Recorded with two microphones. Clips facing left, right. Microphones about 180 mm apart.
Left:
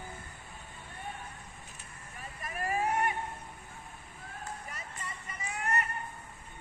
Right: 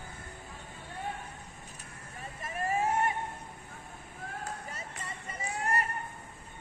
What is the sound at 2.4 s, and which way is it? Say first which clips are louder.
Vehicle: right 2 dB; 25° right (ahead or behind).